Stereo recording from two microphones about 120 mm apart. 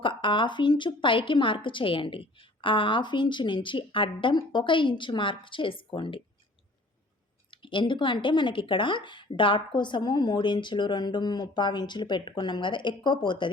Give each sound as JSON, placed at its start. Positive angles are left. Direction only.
{"t": 0.0, "sound": "a woman's voice", "side_deg": 45}
{"t": 7.5, "sound": "speech", "side_deg": 45}